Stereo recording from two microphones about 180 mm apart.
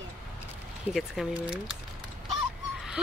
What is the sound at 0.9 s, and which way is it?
Speech, 5° right (ahead or behind).